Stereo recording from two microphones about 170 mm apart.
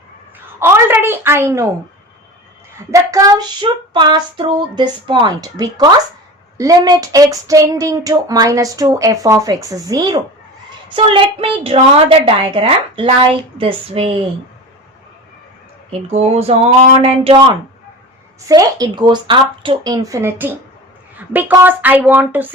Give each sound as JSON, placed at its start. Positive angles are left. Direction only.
{"t": 0.6, "sound": "speech", "side_deg": -15}
{"t": 2.7, "sound": "child singing", "side_deg": -20}
{"t": 10.9, "sound": "a woman's voice", "side_deg": -30}
{"t": 15.9, "sound": "a woman's voice", "side_deg": -40}
{"t": 18.4, "sound": "child singing", "side_deg": -20}
{"t": 21.2, "sound": "speech", "side_deg": -10}